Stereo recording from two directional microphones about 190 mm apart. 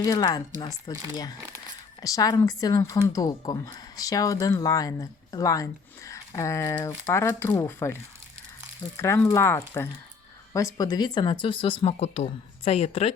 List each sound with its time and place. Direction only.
0.0 s speech: 20° left (ahead or behind)